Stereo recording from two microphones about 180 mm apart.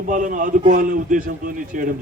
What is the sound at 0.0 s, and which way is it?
A man's voice, 45° right (ahead or behind).